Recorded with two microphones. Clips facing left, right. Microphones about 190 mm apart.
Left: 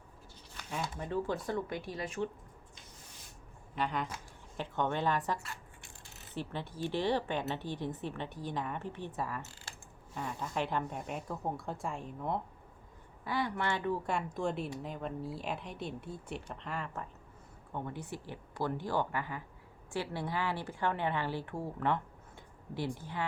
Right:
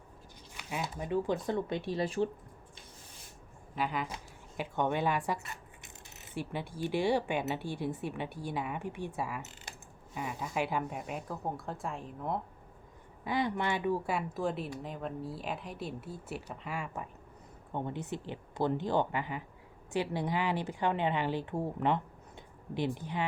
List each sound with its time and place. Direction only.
0.5 s speech: 10° right (ahead or behind); by 2.3 s 35° right (ahead or behind)
3.8 s speech: 5° right (ahead or behind)
10.2 s speech: 10° right (ahead or behind)
13.2 s speech: 20° right (ahead or behind)
17.7 s speech: 20° right (ahead or behind)